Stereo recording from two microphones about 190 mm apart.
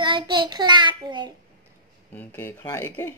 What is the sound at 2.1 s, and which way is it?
Speech, 10° left (ahead or behind).